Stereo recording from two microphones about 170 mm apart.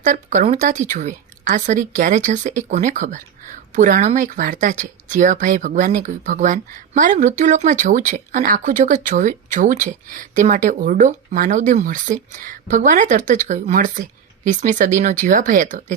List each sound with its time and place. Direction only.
0.0 s a woman's voice: 45° right (ahead or behind)